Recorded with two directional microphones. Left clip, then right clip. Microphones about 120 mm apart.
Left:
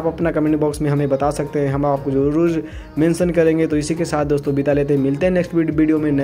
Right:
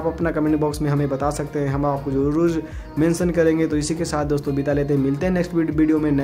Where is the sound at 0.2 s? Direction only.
20° left (ahead or behind).